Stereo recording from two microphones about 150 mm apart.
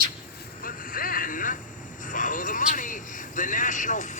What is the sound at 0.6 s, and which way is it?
Vehicle, 70° left (ahead or behind).